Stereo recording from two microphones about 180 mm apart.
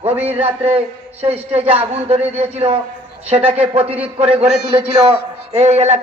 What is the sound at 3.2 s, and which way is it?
Speech, 30° right (ahead or behind).